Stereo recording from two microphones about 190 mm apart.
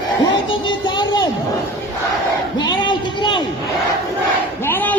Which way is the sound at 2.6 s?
25° left (ahead or behind).